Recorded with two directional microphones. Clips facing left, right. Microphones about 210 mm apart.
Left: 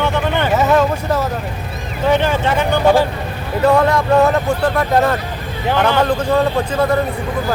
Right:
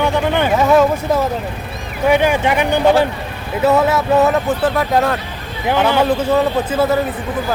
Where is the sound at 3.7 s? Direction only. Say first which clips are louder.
Even; 5° right (ahead or behind).